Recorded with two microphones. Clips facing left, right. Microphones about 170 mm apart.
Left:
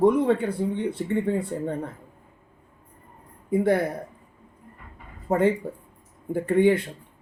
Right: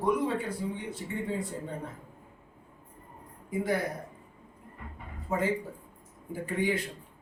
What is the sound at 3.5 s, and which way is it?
Speech, 60° left (ahead or behind).